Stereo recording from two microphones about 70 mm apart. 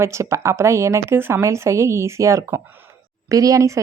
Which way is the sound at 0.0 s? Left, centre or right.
Right.